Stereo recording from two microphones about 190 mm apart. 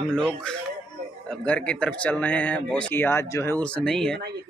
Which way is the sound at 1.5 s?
5° left (ahead or behind).